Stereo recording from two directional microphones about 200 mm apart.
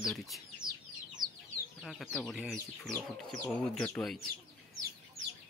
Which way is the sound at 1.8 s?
Centre (ahead or behind).